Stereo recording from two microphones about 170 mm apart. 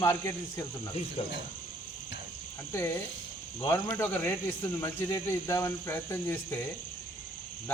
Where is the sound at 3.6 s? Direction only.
15° left (ahead or behind).